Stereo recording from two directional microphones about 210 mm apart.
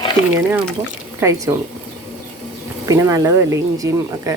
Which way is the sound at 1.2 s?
15° right (ahead or behind).